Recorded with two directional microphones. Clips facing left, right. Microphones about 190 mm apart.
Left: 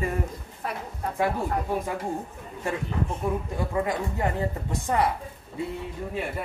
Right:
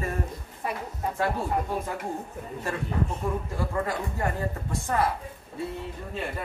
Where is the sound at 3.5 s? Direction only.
20° left (ahead or behind).